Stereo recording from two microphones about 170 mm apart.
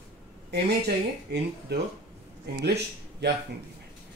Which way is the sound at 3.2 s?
80° right.